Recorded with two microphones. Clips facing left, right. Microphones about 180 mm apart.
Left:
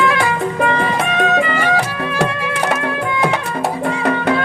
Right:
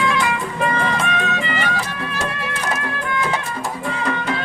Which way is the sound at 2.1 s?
70° left (ahead or behind).